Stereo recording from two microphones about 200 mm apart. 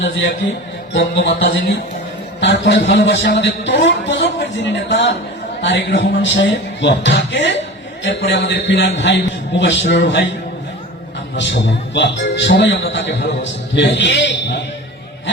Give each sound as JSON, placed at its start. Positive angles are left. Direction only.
{"t": 0.4, "sound": "a man's voice", "side_deg": 60}
{"t": 11.3, "sound": "a man's voice", "side_deg": 65}